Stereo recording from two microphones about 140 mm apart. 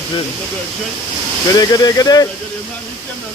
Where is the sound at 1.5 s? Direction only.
30° left (ahead or behind).